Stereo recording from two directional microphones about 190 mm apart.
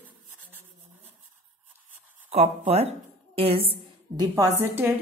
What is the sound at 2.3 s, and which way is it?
A woman's voice, 35° right (ahead or behind).